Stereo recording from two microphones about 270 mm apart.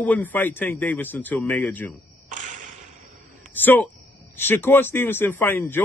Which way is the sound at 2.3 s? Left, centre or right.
Right.